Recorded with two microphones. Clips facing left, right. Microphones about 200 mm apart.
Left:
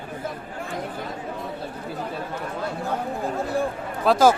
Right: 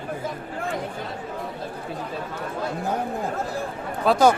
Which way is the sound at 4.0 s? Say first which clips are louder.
Left 1 dB; centre (ahead or behind).